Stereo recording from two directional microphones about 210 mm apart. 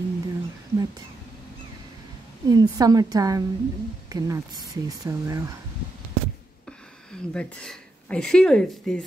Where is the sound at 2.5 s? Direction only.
15° right (ahead or behind).